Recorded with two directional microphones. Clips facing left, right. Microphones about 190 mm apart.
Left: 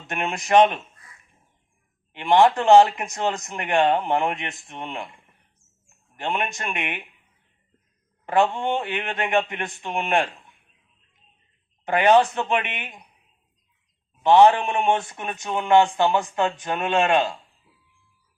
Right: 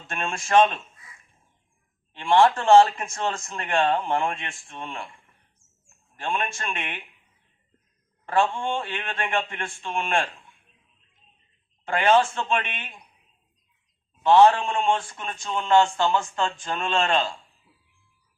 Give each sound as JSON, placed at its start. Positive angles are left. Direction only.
{"t": 0.1, "sound": "speech", "side_deg": 20}
{"t": 2.1, "sound": "speech", "side_deg": 20}
{"t": 8.3, "sound": "speech", "side_deg": 20}
{"t": 11.9, "sound": "speech", "side_deg": 20}
{"t": 14.2, "sound": "speech", "side_deg": 15}